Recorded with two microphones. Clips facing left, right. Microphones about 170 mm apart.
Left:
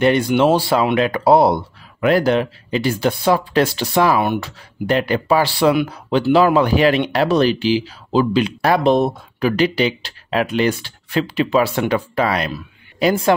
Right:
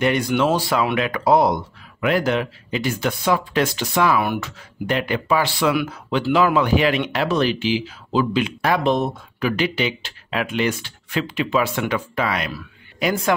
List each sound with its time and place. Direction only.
0.0 s speech: 30° left (ahead or behind)